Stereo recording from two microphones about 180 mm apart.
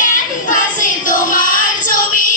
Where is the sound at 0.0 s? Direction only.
45° left (ahead or behind).